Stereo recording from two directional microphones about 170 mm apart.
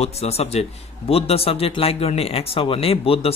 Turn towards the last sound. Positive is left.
turn(degrees=35)  # may be behind; listen again after turning